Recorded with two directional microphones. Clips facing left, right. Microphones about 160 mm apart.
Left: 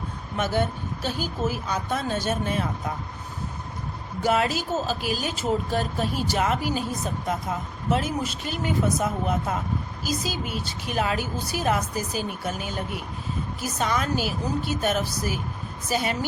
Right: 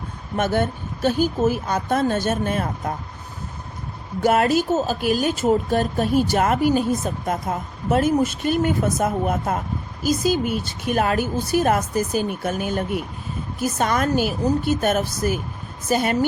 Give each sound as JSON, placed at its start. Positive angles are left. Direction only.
{"t": 0.3, "sound": "speech", "side_deg": -50}
{"t": 4.2, "sound": "speech", "side_deg": -50}